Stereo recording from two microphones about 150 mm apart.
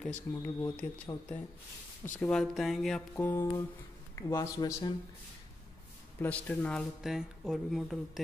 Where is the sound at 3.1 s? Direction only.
15° left (ahead or behind).